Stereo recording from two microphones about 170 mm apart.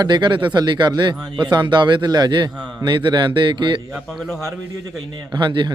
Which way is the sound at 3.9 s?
Centre (ahead or behind).